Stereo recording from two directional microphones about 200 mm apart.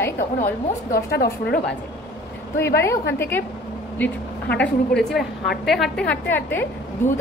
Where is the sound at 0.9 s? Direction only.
50° left (ahead or behind).